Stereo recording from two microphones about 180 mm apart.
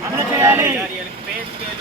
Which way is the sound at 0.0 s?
15° right (ahead or behind).